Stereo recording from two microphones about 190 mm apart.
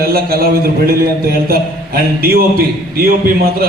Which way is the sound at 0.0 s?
55° right (ahead or behind).